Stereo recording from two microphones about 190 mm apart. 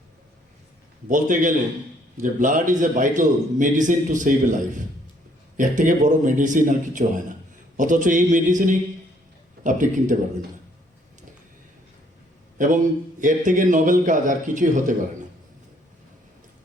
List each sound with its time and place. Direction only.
1.0 s a man's voice: 45° right (ahead or behind)
12.5 s a man's voice: 45° right (ahead or behind)